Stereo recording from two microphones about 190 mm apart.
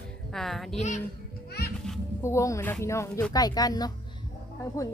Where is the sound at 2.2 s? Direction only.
15° left (ahead or behind).